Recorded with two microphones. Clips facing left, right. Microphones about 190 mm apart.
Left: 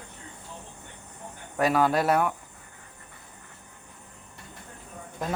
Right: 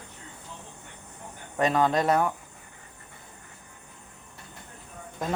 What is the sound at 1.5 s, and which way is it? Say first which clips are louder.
Speech: even; 5° left (ahead or behind).